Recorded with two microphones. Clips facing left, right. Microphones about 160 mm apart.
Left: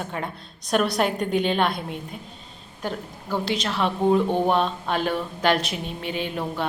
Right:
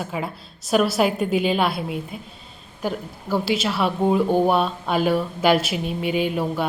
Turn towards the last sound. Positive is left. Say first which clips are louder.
# right 5 dB
turn(degrees=-10)  # may be behind; listen again after turning